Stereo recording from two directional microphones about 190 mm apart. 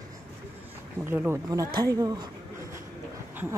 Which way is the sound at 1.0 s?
10° right (ahead or behind).